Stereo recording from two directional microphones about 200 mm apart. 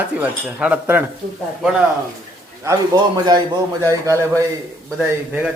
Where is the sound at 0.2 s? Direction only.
5° right (ahead or behind).